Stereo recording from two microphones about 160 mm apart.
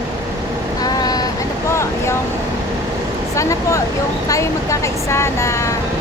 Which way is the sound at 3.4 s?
20° left (ahead or behind).